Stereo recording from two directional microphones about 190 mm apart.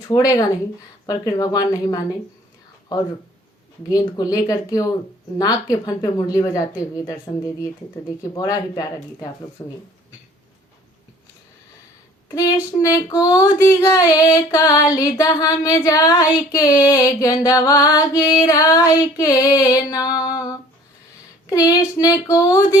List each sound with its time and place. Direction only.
0.1 s music: 20° left (ahead or behind)
3.8 s music: 20° left (ahead or behind)
12.8 s music: 20° left (ahead or behind)